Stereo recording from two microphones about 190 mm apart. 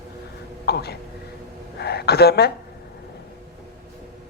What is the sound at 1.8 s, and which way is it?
Speech, 55° left (ahead or behind).